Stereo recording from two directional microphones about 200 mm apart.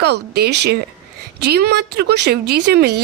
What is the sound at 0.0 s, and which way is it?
Speech, 55° right (ahead or behind).